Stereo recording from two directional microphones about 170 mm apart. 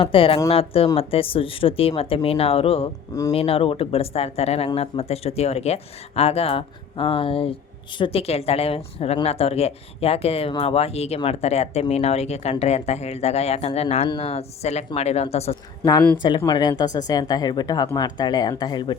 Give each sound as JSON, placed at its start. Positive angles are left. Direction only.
{"t": 0.0, "sound": "speech", "side_deg": 30}
{"t": 15.8, "sound": "speech", "side_deg": 20}